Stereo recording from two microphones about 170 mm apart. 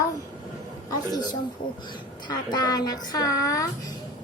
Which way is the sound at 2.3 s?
25° left (ahead or behind).